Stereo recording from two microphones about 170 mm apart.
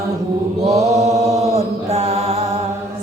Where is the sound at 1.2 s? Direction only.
20° right (ahead or behind).